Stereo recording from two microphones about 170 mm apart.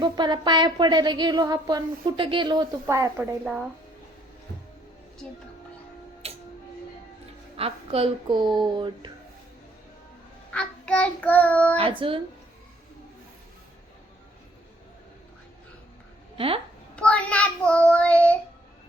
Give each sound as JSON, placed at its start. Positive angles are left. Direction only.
{"t": 0.0, "sound": "speech", "side_deg": -25}
{"t": 2.8, "sound": "a woman's voice", "side_deg": -15}
{"t": 7.5, "sound": "speech", "side_deg": -35}
{"t": 10.5, "sound": "child singing", "side_deg": 5}
{"t": 11.8, "sound": "speech", "side_deg": -30}
{"t": 16.9, "sound": "child singing", "side_deg": 5}